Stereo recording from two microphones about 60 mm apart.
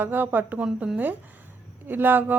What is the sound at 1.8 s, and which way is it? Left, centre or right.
Speech, right.